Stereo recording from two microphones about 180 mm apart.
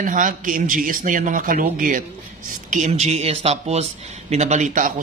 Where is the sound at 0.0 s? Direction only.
45° right (ahead or behind).